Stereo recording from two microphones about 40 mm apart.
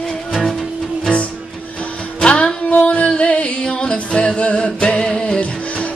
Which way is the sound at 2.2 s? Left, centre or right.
Left.